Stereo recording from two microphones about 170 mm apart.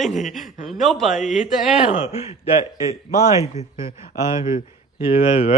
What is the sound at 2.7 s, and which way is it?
Speech, 20° right (ahead or behind).